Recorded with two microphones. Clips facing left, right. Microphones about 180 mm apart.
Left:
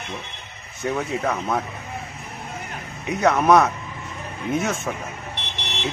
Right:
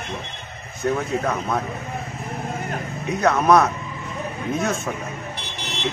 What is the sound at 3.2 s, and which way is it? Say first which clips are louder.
Speech: even; 10° left (ahead or behind).